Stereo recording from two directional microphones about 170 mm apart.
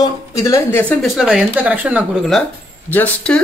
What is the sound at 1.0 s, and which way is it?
Speech, centre (ahead or behind).